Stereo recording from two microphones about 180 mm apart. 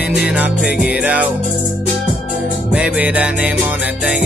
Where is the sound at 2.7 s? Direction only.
5° right (ahead or behind).